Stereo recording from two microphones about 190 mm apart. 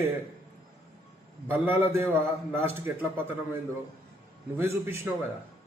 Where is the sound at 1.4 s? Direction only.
10° right (ahead or behind).